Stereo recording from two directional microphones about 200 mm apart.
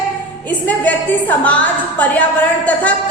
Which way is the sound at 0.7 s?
10° left (ahead or behind).